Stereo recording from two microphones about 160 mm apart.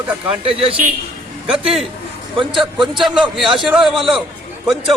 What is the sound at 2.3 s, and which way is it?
Speech, 30° right (ahead or behind).